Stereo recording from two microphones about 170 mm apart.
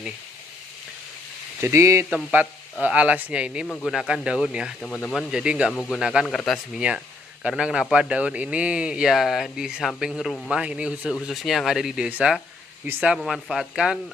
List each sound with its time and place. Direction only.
1.6 s speech: 15° right (ahead or behind)
2.0 s speech: 5° right (ahead or behind)
3.6 s speech: 10° left (ahead or behind)
3.9 s speech: 5° right (ahead or behind)
4.8 s speech: 5° left (ahead or behind)
5.7 s speech: 5° left (ahead or behind)
5.9 s speech: 5° right (ahead or behind)